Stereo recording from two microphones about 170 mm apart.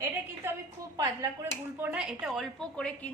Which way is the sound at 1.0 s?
15° right (ahead or behind).